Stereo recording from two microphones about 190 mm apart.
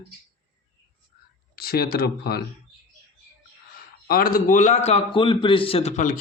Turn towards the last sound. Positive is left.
turn(degrees=40)  # may be behind; listen again after turning